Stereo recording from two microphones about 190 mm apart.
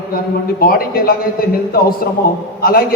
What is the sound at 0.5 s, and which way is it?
Speech, 50° left (ahead or behind).